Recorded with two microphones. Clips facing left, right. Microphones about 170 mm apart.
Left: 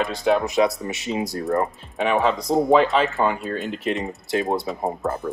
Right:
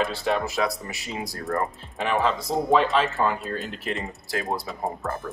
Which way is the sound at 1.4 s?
20° left (ahead or behind).